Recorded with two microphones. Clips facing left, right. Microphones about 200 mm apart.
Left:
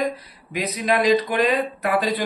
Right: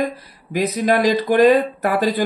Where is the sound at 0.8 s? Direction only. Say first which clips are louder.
Even; 45° right (ahead or behind).